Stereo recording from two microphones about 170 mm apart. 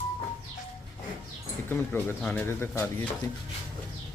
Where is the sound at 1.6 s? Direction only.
15° left (ahead or behind).